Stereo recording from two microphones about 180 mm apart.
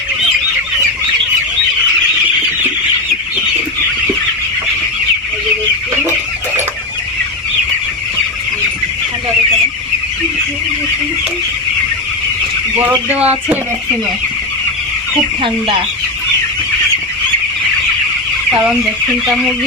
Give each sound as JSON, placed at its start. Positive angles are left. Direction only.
{"t": 13.1, "sound": "speech", "side_deg": -10}
{"t": 15.4, "sound": "speech", "side_deg": -25}